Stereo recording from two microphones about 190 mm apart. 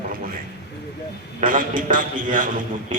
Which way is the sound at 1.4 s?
45° right (ahead or behind).